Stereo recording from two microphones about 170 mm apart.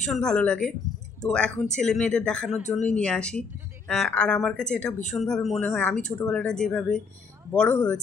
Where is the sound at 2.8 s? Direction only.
5° left (ahead or behind).